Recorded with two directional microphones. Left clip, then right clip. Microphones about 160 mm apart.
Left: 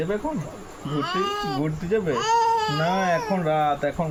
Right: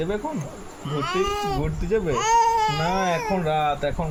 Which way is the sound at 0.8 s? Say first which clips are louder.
Right 1 dB; 30° right (ahead or behind).